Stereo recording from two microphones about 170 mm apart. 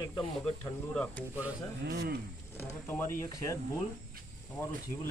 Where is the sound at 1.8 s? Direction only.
75° right (ahead or behind).